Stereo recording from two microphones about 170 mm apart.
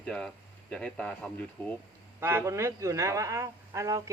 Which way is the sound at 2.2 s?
15° right (ahead or behind).